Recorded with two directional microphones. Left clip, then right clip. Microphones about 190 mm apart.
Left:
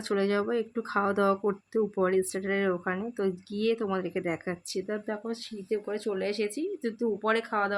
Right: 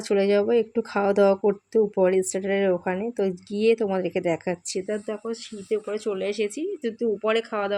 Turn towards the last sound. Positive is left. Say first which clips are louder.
# right 3 dB
turn(degrees=-10)  # may be behind; listen again after turning